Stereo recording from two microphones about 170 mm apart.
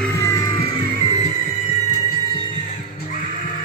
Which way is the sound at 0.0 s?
15° left (ahead or behind).